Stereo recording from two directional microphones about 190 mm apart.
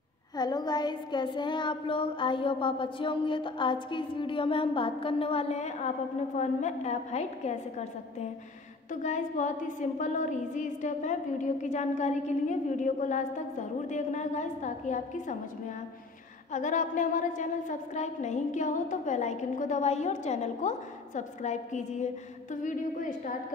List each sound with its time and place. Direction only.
0.4 s child singing: 20° left (ahead or behind)
9.0 s a woman's voice: 40° left (ahead or behind)
16.5 s a woman's voice: 40° left (ahead or behind)